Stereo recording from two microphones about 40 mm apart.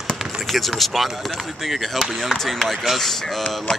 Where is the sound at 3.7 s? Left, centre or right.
Left.